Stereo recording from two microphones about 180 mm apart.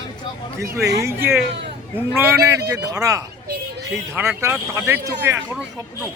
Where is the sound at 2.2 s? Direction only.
15° right (ahead or behind).